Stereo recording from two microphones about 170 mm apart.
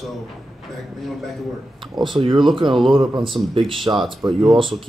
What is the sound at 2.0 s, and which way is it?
Speech, centre (ahead or behind).